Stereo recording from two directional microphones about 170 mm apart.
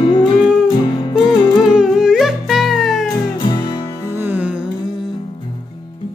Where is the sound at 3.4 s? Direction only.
25° left (ahead or behind).